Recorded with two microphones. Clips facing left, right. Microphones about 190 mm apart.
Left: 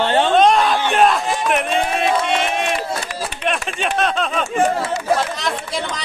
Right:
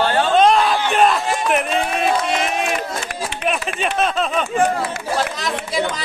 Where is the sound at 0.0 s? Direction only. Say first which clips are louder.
Left 1 dB; 25° left (ahead or behind).